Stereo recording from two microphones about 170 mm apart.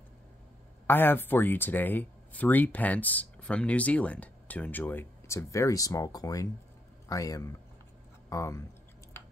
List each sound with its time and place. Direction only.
0.8 s a man's voice: 10° left (ahead or behind)